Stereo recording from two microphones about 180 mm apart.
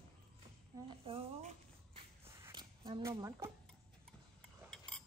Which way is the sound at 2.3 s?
15° right (ahead or behind).